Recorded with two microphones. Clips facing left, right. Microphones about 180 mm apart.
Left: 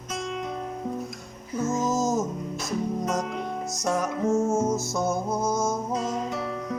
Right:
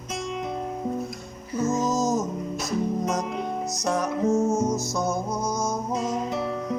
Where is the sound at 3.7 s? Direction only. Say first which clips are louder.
Even; centre (ahead or behind).